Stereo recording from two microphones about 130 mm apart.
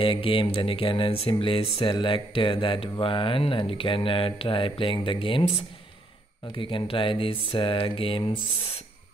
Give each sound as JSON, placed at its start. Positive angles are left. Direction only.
{"t": 0.0, "sound": "speech", "side_deg": 40}